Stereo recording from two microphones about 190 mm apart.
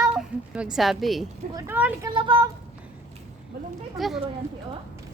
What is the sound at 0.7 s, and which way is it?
Speech, centre (ahead or behind).